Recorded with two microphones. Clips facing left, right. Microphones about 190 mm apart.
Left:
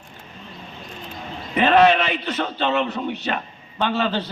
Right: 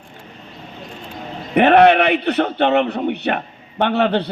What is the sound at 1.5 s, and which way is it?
A man's voice, 60° right (ahead or behind).